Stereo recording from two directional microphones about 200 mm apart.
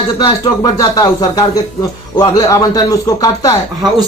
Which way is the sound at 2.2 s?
20° left (ahead or behind).